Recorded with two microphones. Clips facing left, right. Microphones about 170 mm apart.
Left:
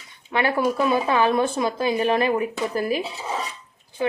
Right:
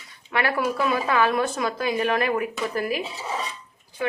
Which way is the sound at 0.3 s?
20° left (ahead or behind).